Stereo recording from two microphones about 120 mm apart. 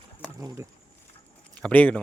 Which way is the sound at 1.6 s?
10° left (ahead or behind).